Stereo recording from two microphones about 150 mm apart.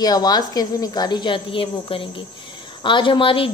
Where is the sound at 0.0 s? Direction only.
25° left (ahead or behind).